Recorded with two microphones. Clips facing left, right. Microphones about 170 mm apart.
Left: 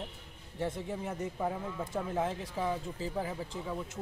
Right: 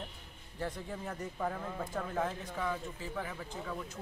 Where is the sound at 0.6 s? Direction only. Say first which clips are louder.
Left 4 dB; 25° left (ahead or behind).